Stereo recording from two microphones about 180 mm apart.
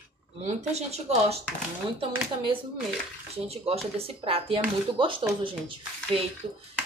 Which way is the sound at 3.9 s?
30° right (ahead or behind).